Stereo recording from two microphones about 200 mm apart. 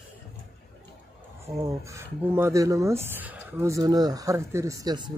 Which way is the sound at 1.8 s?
15° right (ahead or behind).